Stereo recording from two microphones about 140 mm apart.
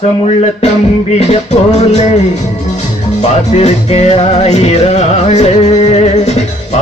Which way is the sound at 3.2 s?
55° left (ahead or behind).